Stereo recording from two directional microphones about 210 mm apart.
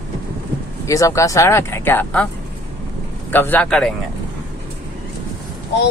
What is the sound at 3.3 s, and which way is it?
Speech, 10° left (ahead or behind).